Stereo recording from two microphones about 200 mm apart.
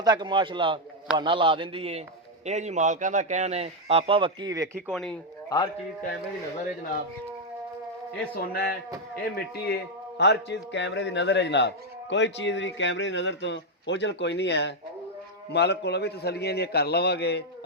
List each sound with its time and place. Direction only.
0.0 s a man's voice: 20° right (ahead or behind)
4.9 s speech: centre (ahead or behind)
5.5 s music: 20° left (ahead or behind)
8.4 s a man's voice: 50° left (ahead or behind)